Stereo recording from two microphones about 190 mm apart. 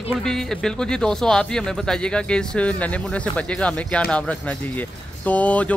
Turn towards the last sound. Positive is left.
turn(degrees=5)  # may be behind; listen again after turning